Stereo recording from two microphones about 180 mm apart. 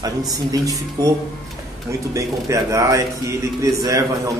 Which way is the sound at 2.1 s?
15° right (ahead or behind).